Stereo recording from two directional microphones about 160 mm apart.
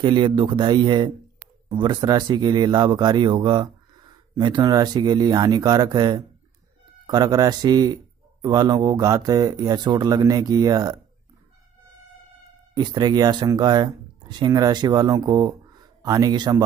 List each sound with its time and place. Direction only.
0.0 s speech: 30° right (ahead or behind)
12.7 s speech: 25° right (ahead or behind)